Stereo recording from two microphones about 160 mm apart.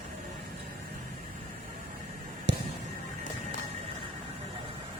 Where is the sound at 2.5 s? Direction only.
90° right.